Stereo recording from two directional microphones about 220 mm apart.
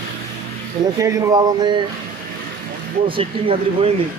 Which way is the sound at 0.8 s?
15° right (ahead or behind).